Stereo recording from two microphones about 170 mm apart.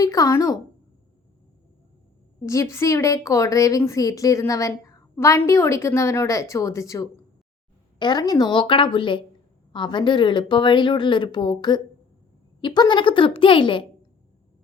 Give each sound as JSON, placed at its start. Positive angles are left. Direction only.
{"t": 0.0, "sound": "a woman's voice", "side_deg": 20}
{"t": 2.4, "sound": "a woman's voice", "side_deg": 20}